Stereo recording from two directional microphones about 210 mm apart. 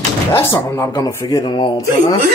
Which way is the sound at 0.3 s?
15° left (ahead or behind).